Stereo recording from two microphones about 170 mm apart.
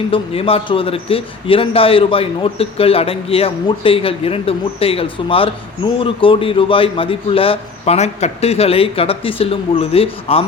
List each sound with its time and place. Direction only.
0.1 s a man's voice: 35° left (ahead or behind)